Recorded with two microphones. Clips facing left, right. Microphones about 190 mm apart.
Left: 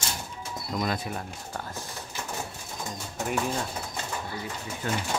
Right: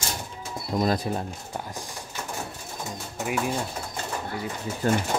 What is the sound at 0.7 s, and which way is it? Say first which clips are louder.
Speech: right 6 dB; 30° right (ahead or behind).